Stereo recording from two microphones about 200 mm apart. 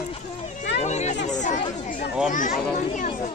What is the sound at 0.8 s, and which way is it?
Speech, 35° left (ahead or behind).